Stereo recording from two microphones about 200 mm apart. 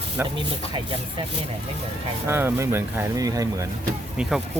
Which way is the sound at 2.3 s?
10° right (ahead or behind).